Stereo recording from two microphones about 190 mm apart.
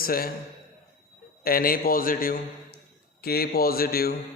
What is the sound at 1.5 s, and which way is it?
A man's voice, 50° left (ahead or behind).